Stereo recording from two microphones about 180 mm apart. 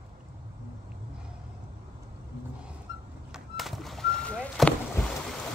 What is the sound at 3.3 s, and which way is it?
Vehicle, centre (ahead or behind).